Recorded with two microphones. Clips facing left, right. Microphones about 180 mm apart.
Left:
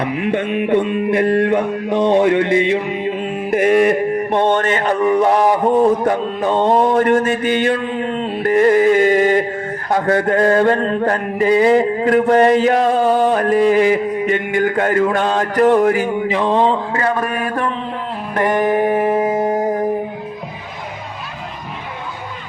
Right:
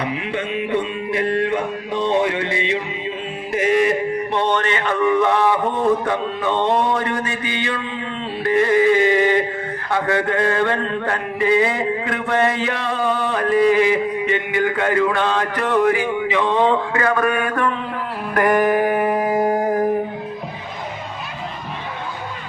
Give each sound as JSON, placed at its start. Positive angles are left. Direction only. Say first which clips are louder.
{"t": 0.0, "sound": "music", "louder": "left 5 dB", "side_deg": 50}
{"t": 9.9, "sound": "a sound", "louder": "left 4 dB", "side_deg": 40}
{"t": 18.3, "sound": "mantra", "louder": "even", "side_deg": 25}